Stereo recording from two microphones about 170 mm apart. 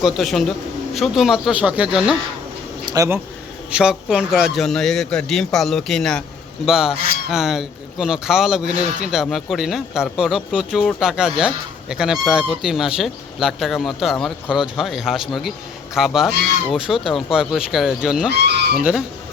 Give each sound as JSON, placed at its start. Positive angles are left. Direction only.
{"t": 0.0, "sound": "speech", "side_deg": 0}
{"t": 2.8, "sound": "speech", "side_deg": -20}
{"t": 3.7, "sound": "speech", "side_deg": -5}
{"t": 18.3, "sound": "speech", "side_deg": -75}
{"t": 18.8, "sound": "speech", "side_deg": -5}